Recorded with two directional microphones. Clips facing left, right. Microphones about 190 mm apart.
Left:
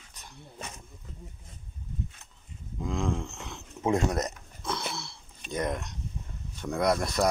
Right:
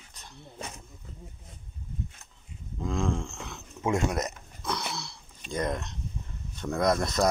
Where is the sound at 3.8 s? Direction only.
35° left (ahead or behind).